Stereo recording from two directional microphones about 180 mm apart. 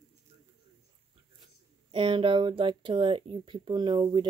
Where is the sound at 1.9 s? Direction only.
30° right (ahead or behind).